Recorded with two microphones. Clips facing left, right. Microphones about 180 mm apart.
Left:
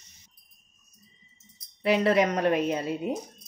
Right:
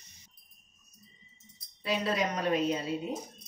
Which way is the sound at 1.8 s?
65° left (ahead or behind).